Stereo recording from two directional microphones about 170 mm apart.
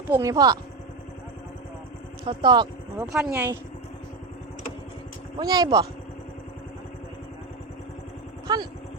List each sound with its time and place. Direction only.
0.1 s speech: 20° right (ahead or behind)
2.2 s speech: 25° right (ahead or behind)
3.1 s speech: 5° right (ahead or behind)
3.3 s speech: 15° right (ahead or behind)
5.4 s speech: 25° right (ahead or behind)
8.5 s speech: 25° right (ahead or behind)